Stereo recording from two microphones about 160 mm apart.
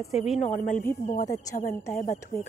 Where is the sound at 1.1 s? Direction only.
50° left (ahead or behind).